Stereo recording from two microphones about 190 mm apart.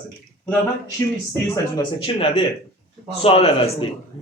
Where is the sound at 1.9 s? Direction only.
30° left (ahead or behind).